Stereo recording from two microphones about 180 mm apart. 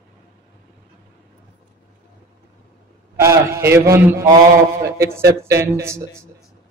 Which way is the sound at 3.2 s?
15° right (ahead or behind).